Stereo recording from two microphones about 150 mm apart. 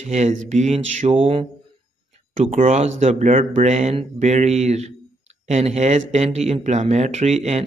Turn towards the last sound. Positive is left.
turn(degrees=-45)  # may be behind; listen again after turning